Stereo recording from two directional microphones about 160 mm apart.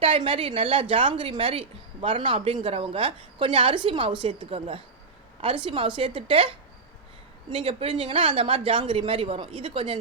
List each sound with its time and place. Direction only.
0.0 s a woman's voice: 35° right (ahead or behind)